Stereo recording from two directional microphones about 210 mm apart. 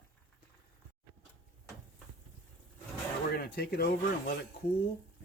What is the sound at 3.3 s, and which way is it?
Speech, 50° left (ahead or behind).